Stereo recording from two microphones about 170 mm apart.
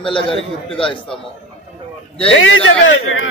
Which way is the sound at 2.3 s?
90° left.